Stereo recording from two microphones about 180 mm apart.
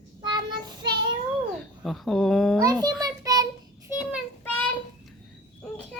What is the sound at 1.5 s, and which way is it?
Speech, centre (ahead or behind).